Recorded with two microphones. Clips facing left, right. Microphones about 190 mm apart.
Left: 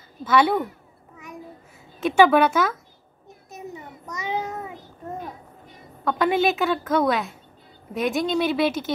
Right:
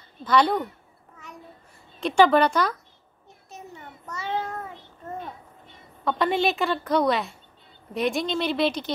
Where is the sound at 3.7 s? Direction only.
15° left (ahead or behind).